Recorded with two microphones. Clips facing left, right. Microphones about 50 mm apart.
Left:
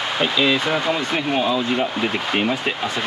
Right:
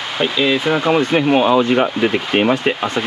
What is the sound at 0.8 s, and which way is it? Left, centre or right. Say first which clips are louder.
Speech: right 7 dB; right.